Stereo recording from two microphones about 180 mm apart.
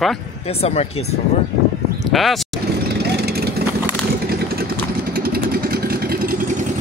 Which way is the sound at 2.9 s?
65° right (ahead or behind).